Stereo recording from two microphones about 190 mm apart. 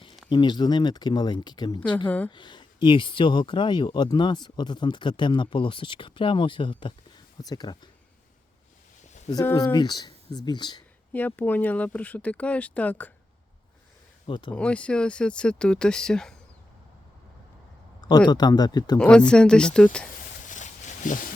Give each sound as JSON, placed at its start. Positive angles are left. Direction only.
{"t": 0.3, "sound": "speech", "side_deg": 25}
{"t": 2.0, "sound": "speech", "side_deg": 10}
{"t": 2.3, "sound": "speech", "side_deg": 25}
{"t": 9.3, "sound": "speech", "side_deg": 15}
{"t": 11.1, "sound": "speech", "side_deg": 10}
{"t": 14.3, "sound": "speech", "side_deg": 25}
{"t": 14.5, "sound": "speech", "side_deg": 5}
{"t": 18.3, "sound": "speech", "side_deg": 20}
{"t": 18.9, "sound": "speech", "side_deg": 5}
{"t": 20.4, "sound": "a sound", "side_deg": 40}